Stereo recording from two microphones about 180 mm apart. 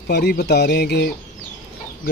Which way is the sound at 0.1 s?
65° left (ahead or behind).